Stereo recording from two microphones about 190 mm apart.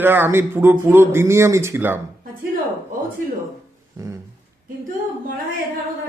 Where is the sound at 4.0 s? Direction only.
15° right (ahead or behind).